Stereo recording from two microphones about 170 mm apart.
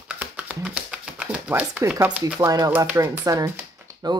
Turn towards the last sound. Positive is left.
turn(degrees=-15)  # may be behind; listen again after turning